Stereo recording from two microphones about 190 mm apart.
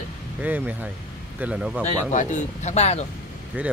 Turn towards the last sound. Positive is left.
turn(degrees=-10)  # may be behind; listen again after turning